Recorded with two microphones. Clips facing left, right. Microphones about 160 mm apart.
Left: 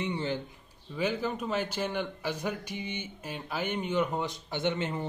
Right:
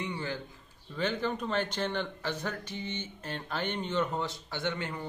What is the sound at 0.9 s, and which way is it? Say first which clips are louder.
A man's voice: left 1 dB; 10° left (ahead or behind).